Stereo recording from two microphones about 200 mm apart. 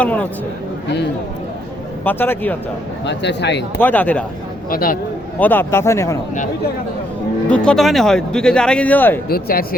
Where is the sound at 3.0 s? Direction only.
60° left (ahead or behind).